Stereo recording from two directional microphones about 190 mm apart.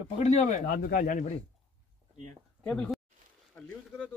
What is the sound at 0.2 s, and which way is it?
Speech, 40° left (ahead or behind).